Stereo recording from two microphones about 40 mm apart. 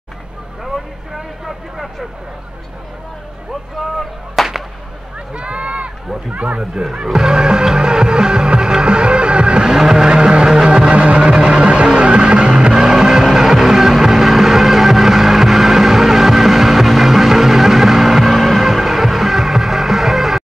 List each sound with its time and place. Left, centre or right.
0.7 s vehicle: centre
4.4 s whip: centre
5.3 s speech: right
6.6 s speech: centre
7.2 s music: centre
9.8 s vehicle: centre